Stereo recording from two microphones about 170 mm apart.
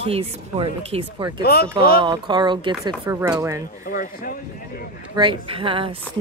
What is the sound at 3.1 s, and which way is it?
Speech, 15° right (ahead or behind).